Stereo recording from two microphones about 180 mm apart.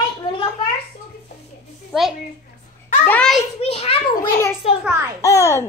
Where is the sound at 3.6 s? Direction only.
35° left (ahead or behind).